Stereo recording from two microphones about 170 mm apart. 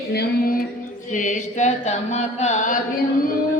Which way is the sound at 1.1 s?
50° left (ahead or behind).